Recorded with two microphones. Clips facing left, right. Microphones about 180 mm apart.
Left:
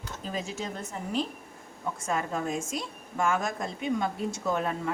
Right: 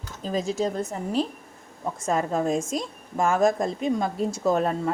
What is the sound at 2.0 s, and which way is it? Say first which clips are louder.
A woman's voice: right 7 dB; 35° right (ahead or behind).